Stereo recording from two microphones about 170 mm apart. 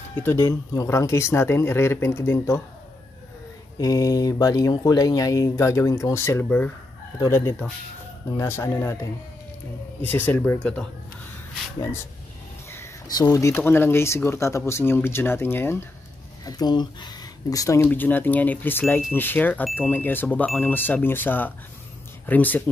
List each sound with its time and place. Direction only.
0.1 s speech: 10° left (ahead or behind)
3.7 s speech: 20° left (ahead or behind)
10.0 s speech: 10° left (ahead or behind)
12.7 s speech: 20° left (ahead or behind)
16.4 s speech: 25° left (ahead or behind)